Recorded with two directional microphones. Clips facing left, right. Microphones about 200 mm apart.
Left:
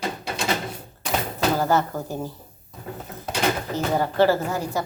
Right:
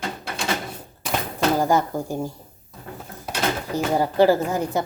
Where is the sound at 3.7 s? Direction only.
15° right (ahead or behind).